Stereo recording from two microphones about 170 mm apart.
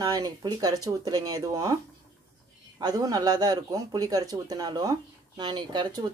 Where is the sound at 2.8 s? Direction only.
20° right (ahead or behind).